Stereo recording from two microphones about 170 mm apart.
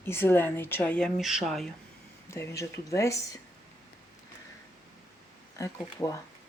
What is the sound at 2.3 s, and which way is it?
Speech, 15° left (ahead or behind).